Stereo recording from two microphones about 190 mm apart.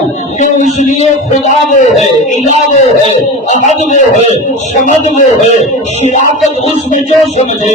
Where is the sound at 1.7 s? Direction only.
35° left (ahead or behind).